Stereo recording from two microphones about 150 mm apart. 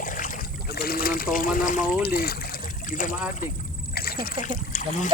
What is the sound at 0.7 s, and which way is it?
Trickle, 90° left.